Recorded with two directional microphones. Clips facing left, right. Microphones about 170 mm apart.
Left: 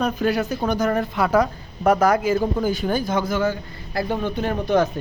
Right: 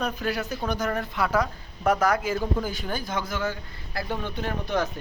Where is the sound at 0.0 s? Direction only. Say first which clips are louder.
Left 7 dB; 20° left (ahead or behind).